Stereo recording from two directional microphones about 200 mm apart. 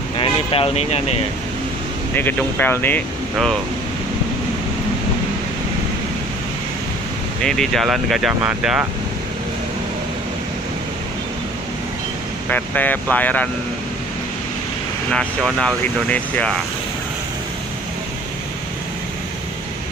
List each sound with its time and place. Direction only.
0.2 s speech: 25° left (ahead or behind)
2.1 s speech: 10° left (ahead or behind)
7.4 s speech: centre (ahead or behind)
12.4 s speech: 10° left (ahead or behind)
15.1 s speech: 5° left (ahead or behind)